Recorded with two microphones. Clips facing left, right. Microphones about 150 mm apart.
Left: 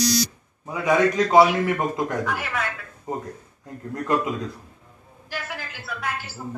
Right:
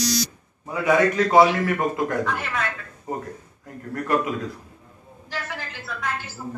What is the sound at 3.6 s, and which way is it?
Speech, 20° left (ahead or behind).